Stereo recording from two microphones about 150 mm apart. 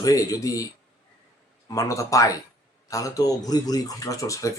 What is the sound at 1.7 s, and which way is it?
Speech, 20° left (ahead or behind).